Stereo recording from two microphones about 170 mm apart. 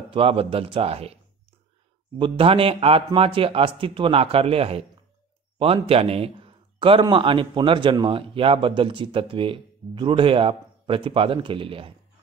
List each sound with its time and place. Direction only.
0.1 s speech: 35° right (ahead or behind)